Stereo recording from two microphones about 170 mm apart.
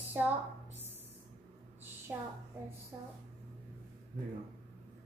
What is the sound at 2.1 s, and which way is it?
Speech, 10° right (ahead or behind).